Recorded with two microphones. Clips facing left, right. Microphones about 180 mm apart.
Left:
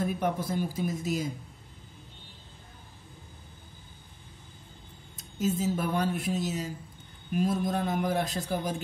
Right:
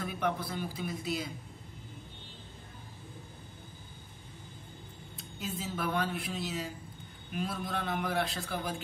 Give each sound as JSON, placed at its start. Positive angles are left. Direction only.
{"t": 0.0, "sound": "a man's voice", "side_deg": 45}
{"t": 5.1, "sound": "a man's voice", "side_deg": 45}